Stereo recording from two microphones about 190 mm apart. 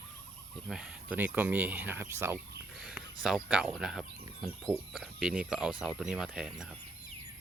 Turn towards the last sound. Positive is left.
turn(degrees=-5)  # may be behind; listen again after turning